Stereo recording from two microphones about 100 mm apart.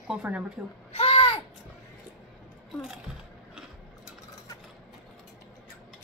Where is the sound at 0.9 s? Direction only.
75° left (ahead or behind).